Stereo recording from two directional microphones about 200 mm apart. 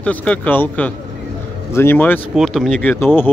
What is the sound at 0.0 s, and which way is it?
A man's voice, 5° left (ahead or behind).